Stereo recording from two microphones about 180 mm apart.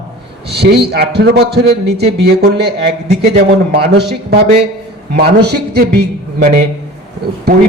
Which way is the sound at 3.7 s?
65° right (ahead or behind).